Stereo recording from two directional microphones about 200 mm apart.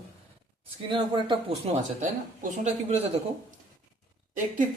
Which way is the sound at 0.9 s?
25° right (ahead or behind).